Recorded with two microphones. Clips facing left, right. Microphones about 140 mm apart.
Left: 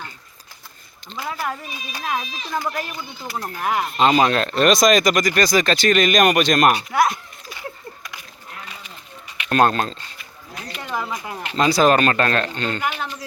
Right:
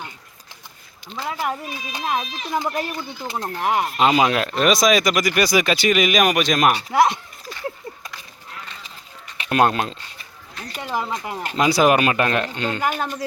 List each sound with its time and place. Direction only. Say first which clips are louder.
1.2 s speech: right 2 dB; 20° right (ahead or behind)
3.9 s speech: left 2 dB; 10° right (ahead or behind)
6.9 s speech: right 2 dB; 30° right (ahead or behind)
9.5 s speech: left 1 dB; 10° right (ahead or behind)
10.8 s speech: right 2 dB; 25° right (ahead or behind)
12.8 s speech: right 3 dB; 45° right (ahead or behind)